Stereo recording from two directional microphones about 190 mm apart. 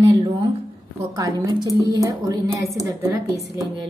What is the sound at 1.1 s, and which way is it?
A woman's voice, 20° right (ahead or behind).